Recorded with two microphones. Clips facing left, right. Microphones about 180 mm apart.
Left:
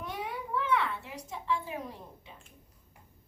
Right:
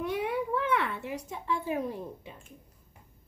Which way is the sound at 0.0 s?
60° right (ahead or behind).